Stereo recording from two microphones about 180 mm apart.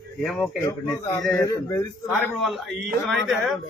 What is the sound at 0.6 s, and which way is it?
Speech, 15° left (ahead or behind).